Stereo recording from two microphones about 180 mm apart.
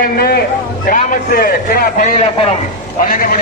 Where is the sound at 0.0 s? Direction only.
55° left (ahead or behind).